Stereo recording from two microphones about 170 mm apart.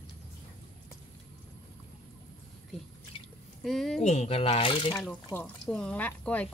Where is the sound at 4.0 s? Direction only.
40° left (ahead or behind).